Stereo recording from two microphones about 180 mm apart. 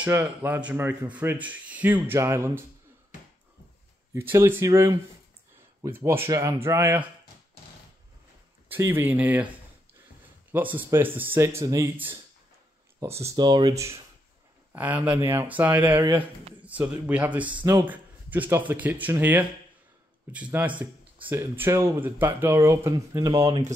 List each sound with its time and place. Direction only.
0.0 s a man's voice: 10° right (ahead or behind)
4.1 s a man's voice: 15° right (ahead or behind)
8.6 s a man's voice: 10° right (ahead or behind)
10.5 s a man's voice: 10° right (ahead or behind)
16.1 s speech: 30° right (ahead or behind)
16.6 s a man's voice: 10° right (ahead or behind); by 23.6 s 25° right (ahead or behind)